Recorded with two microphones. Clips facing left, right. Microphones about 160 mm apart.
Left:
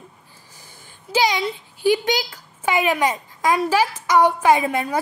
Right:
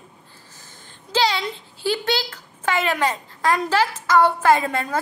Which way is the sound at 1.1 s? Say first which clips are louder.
Left 1 dB; 10° left (ahead or behind).